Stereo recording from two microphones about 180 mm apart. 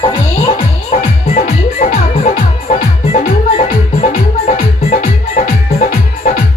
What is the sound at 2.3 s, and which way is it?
Music, 45° left (ahead or behind).